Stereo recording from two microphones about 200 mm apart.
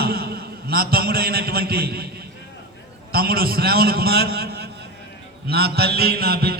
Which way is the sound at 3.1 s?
50° right (ahead or behind).